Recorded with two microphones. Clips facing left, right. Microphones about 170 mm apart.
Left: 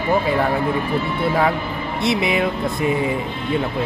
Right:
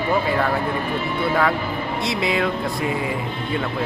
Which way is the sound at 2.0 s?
20° left (ahead or behind).